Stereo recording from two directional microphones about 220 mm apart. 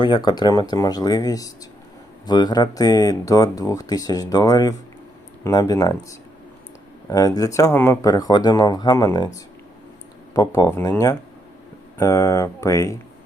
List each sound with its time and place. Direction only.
0.0 s speech: 20° left (ahead or behind)